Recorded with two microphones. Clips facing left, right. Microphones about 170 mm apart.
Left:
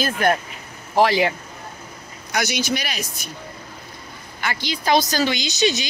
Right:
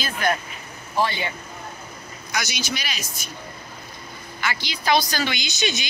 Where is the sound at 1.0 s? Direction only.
90° left.